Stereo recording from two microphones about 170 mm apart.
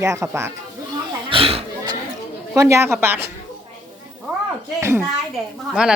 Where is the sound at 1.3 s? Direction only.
35° right (ahead or behind).